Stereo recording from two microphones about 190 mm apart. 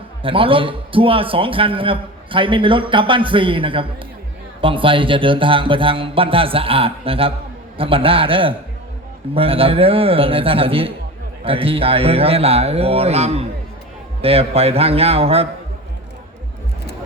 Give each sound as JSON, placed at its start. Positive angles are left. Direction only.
{"t": 0.2, "sound": "a man's voice", "side_deg": -25}